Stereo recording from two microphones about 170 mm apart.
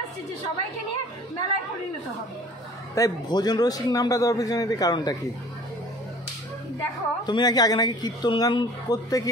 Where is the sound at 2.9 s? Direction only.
20° left (ahead or behind).